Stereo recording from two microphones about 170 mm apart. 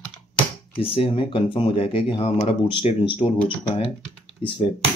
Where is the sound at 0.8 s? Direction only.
35° left (ahead or behind).